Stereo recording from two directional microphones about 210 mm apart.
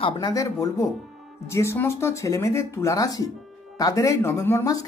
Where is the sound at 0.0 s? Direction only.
20° left (ahead or behind).